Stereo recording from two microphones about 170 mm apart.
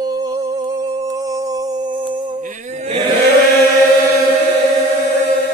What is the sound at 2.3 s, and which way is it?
Wild animals, 45° right (ahead or behind).